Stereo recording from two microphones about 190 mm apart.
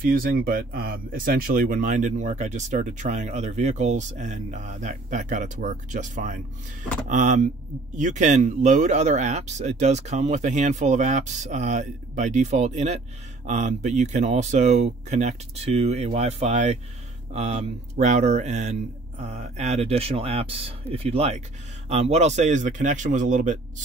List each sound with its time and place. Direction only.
0.0 s speech: 50° right (ahead or behind)